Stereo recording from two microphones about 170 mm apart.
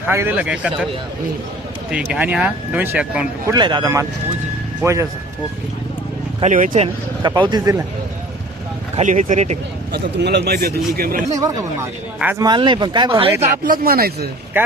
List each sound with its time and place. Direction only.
0.1 s speech: 10° right (ahead or behind)
1.9 s speech: 5° right (ahead or behind)
3.5 s speech: 25° right (ahead or behind)
6.4 s speech: 45° right (ahead or behind)
6.8 s speech: 25° right (ahead or behind)
9.0 s speech: 45° right (ahead or behind)
9.9 s speech: 80° right; by 11.2 s 60° right (ahead or behind)
11.3 s speech: 20° right (ahead or behind)
12.4 s speech: 25° right (ahead or behind)
13.7 s speech: 60° right (ahead or behind)
14.5 s speech: 10° right (ahead or behind)